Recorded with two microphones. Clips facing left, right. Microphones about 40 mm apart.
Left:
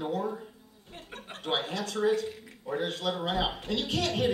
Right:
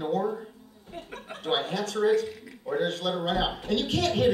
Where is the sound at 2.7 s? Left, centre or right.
Centre.